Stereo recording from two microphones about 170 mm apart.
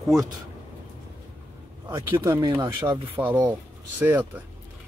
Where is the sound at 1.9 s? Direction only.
15° right (ahead or behind).